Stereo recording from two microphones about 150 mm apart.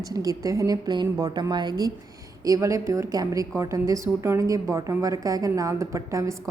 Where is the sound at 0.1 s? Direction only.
25° right (ahead or behind).